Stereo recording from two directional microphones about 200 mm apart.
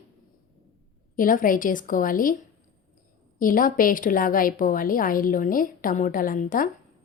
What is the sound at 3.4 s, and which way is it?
A woman's voice, 45° left (ahead or behind).